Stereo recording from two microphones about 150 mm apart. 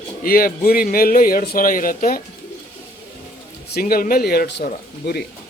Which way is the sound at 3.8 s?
75° left (ahead or behind).